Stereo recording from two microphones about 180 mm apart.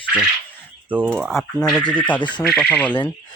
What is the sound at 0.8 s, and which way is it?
Speech, 10° right (ahead or behind).